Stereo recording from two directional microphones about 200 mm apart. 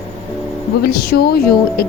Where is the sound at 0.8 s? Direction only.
50° left (ahead or behind).